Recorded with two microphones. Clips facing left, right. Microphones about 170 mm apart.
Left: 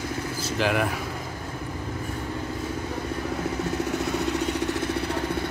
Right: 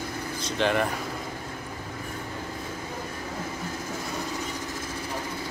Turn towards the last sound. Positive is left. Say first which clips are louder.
# left 8 dB
turn(degrees=70)  # may be behind; listen again after turning